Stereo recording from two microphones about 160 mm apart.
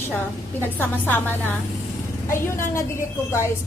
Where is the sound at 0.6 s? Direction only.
10° left (ahead or behind).